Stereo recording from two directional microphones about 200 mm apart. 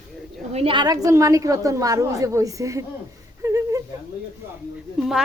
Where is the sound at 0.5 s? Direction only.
25° right (ahead or behind).